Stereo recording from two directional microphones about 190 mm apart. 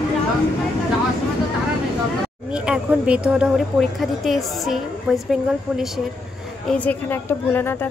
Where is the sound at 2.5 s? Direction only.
5° right (ahead or behind).